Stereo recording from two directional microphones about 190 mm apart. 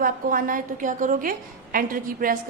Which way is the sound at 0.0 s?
45° right (ahead or behind).